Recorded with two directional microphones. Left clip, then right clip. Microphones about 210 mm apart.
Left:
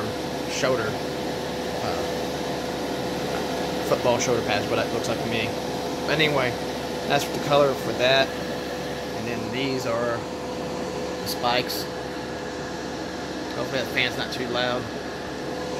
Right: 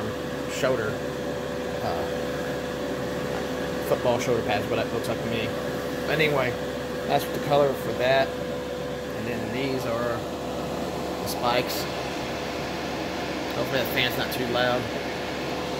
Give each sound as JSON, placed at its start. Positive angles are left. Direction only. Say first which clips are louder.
{"t": 4.1, "sound": "speech", "louder": "left 2 dB", "side_deg": 0}
{"t": 6.0, "sound": "speech", "louder": "left 1 dB", "side_deg": 0}
{"t": 13.7, "sound": "speech", "louder": "left 1 dB", "side_deg": -20}